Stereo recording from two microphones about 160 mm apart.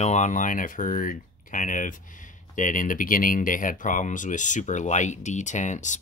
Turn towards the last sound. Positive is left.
turn(degrees=50)  # may be behind; listen again after turning